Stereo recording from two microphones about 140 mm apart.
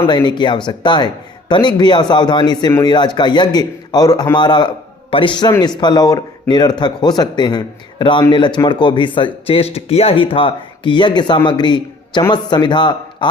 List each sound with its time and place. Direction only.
0.1 s a man's voice: 30° left (ahead or behind)